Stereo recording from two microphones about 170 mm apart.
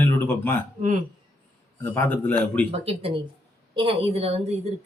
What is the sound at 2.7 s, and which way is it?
A woman's voice, 35° right (ahead or behind).